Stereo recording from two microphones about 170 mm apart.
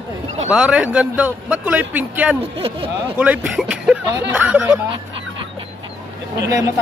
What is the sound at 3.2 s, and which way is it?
A man's voice, 5° right (ahead or behind).